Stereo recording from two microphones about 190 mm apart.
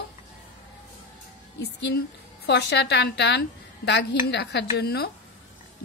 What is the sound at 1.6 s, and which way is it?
A woman's voice, 60° left (ahead or behind).